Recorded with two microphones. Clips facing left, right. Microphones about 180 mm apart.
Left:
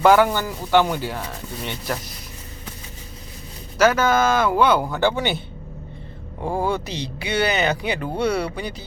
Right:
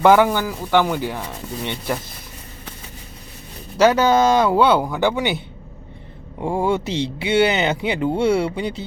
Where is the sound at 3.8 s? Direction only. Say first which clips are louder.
Right 3 dB; 30° right (ahead or behind).